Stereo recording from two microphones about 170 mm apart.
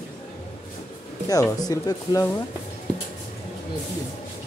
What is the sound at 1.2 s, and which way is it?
Speech, 20° left (ahead or behind).